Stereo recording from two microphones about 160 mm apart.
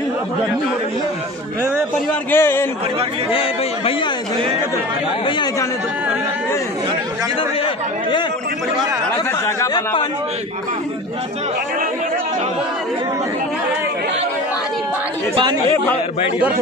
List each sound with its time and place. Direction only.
2.3 s a man's voice: 15° left (ahead or behind)
3.3 s speech: 35° left (ahead or behind)
5.2 s speech: 25° left (ahead or behind)